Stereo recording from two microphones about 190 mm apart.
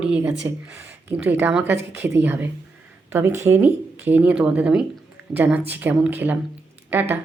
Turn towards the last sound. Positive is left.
turn(degrees=-10)  # may be behind; listen again after turning